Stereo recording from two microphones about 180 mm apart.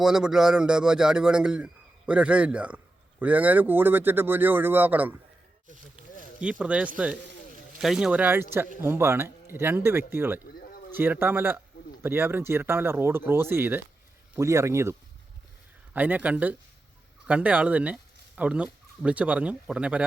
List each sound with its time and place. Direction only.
0.0 s a man's voice: 5° right (ahead or behind)
6.4 s a man's voice: 5° right (ahead or behind)